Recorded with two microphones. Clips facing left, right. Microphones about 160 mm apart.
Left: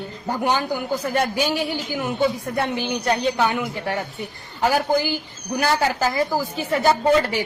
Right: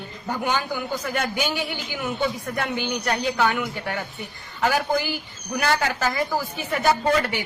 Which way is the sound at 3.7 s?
30° left (ahead or behind).